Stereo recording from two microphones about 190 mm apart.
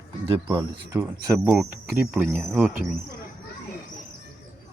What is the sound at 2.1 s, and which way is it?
Speech, centre (ahead or behind).